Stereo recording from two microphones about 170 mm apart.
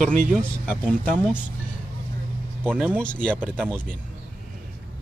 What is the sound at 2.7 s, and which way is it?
Speech, 10° right (ahead or behind).